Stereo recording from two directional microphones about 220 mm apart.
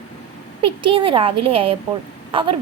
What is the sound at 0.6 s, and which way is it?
A woman's voice, 25° right (ahead or behind).